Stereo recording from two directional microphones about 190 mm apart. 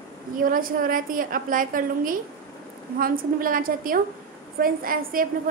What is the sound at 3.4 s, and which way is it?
A woman's voice, 45° right (ahead or behind).